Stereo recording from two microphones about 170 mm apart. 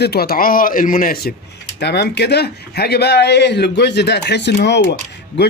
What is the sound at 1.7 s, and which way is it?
Speech, 80° left.